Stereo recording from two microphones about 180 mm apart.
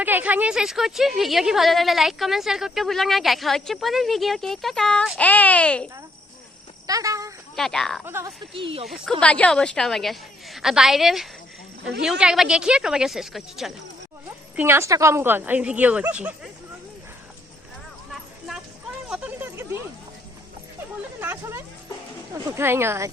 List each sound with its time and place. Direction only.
0.0 s speech: 10° right (ahead or behind); by 5.9 s 5° left (ahead or behind)
6.8 s a sound: 20° right (ahead or behind)
7.5 s speech: centre (ahead or behind)
8.0 s speech: 15° right (ahead or behind)
8.5 s speech: 30° right (ahead or behind)
9.2 s speech: 5° left (ahead or behind)
14.5 s speech: 10° right (ahead or behind)
18.1 s horse: centre (ahead or behind)
19.0 s a sound: 5° right (ahead or behind)
21.2 s a sound: 15° right (ahead or behind)
22.3 s speech: 15° right (ahead or behind)